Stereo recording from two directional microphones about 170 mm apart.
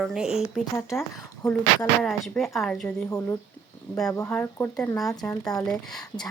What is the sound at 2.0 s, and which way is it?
Speech, centre (ahead or behind).